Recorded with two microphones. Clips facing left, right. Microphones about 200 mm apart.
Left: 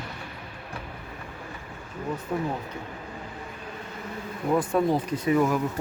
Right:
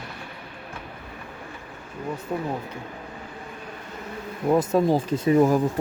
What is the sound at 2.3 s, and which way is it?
Speech, 15° right (ahead or behind).